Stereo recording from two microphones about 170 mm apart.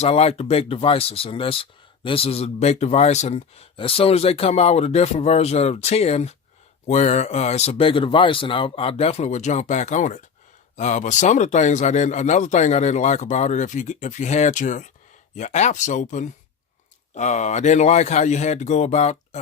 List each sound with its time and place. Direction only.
0.0 s speech: 35° left (ahead or behind)